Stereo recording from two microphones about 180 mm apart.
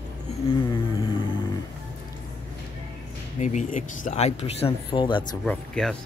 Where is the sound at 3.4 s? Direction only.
45° left (ahead or behind); by 5.2 s 25° left (ahead or behind).